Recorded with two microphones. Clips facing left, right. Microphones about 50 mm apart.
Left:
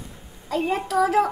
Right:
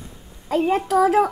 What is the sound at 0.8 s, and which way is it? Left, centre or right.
Speech, centre.